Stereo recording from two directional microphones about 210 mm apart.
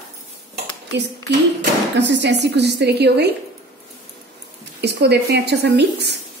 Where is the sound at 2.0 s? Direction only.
55° right (ahead or behind).